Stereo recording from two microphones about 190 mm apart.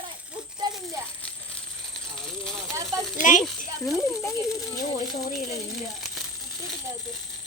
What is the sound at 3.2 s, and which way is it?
Speech, 40° left (ahead or behind).